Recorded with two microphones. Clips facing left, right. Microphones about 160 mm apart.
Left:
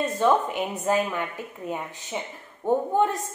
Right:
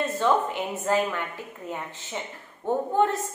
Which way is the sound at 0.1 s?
15° left (ahead or behind).